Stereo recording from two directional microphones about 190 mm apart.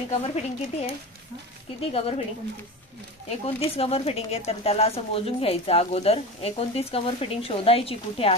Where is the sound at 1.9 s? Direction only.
30° left (ahead or behind).